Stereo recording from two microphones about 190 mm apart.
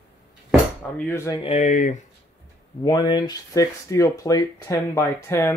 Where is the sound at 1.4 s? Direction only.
35° left (ahead or behind).